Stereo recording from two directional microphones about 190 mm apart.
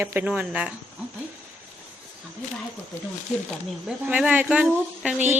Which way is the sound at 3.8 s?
5° right (ahead or behind).